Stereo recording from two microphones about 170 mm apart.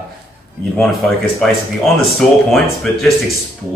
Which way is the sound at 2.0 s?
5° left (ahead or behind).